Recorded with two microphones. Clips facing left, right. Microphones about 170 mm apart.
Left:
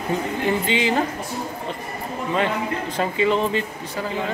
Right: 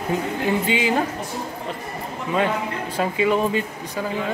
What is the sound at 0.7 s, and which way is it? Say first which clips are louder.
Speech: even; 10° right (ahead or behind).